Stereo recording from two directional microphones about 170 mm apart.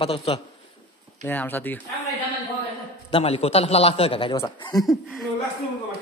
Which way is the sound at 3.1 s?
35° left (ahead or behind).